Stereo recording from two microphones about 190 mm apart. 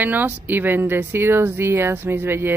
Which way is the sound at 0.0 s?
10° right (ahead or behind).